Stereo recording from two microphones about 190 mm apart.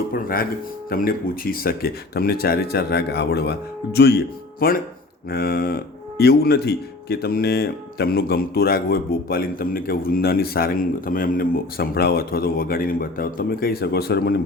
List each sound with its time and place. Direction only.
0.1 s speech: 50° left (ahead or behind)
5.3 s speech: 50° left (ahead or behind)